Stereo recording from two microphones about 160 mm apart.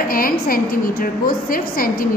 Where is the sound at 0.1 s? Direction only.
65° left (ahead or behind).